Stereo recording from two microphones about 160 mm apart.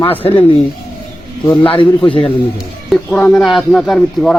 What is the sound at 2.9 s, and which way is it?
Speech, 5° left (ahead or behind).